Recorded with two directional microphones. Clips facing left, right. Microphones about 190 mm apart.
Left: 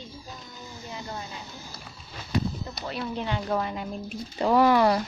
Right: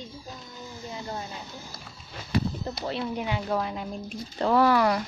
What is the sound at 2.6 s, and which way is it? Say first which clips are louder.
Speech: right 3 dB; 30° right (ahead or behind).